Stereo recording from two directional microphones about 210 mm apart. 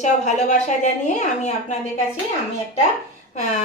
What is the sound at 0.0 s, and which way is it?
A woman's voice, 35° left (ahead or behind).